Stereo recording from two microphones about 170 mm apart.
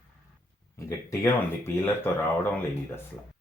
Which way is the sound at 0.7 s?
15° left (ahead or behind).